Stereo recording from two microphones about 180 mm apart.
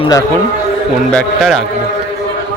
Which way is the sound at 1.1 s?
Centre (ahead or behind).